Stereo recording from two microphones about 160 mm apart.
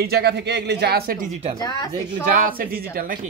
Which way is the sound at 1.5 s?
25° left (ahead or behind).